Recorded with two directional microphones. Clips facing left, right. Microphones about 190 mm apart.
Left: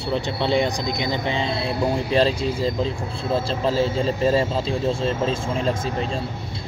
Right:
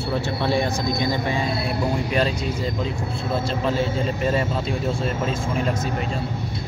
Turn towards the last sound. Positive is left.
turn(degrees=30)  # may be behind; listen again after turning